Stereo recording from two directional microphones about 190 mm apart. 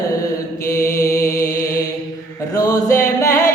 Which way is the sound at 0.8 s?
15° left (ahead or behind).